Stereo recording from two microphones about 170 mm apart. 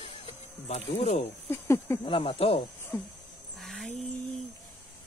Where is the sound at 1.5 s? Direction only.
15° left (ahead or behind).